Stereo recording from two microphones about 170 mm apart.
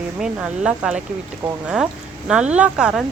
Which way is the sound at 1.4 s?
15° right (ahead or behind).